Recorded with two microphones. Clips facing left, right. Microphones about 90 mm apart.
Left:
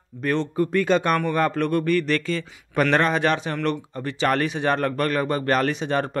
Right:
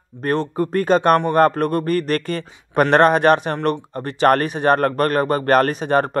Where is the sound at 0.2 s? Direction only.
40° right (ahead or behind).